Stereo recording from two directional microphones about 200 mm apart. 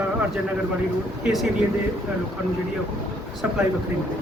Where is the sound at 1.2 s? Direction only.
Centre (ahead or behind).